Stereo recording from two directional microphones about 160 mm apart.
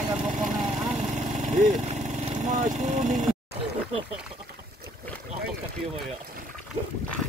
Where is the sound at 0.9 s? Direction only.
45° right (ahead or behind).